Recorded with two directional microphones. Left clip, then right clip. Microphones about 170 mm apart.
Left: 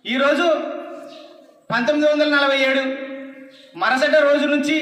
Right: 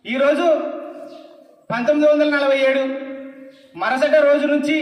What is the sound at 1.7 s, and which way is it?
A man's voice, 30° right (ahead or behind).